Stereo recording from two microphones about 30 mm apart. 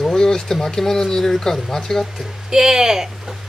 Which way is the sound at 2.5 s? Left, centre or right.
Centre.